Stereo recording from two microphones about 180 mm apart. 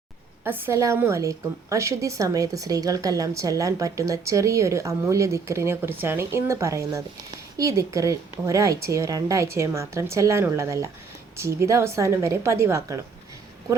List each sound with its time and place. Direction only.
0.4 s a woman's voice: 10° right (ahead or behind)